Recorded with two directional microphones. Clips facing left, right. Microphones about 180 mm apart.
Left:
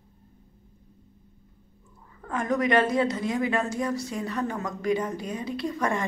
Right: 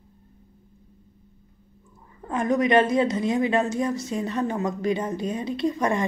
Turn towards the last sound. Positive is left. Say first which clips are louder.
# right 4 dB
turn(degrees=-20)  # may be behind; listen again after turning